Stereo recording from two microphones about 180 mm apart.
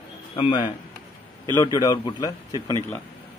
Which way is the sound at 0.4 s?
25° left (ahead or behind).